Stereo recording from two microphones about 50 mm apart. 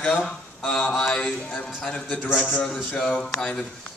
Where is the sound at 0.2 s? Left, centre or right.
Centre.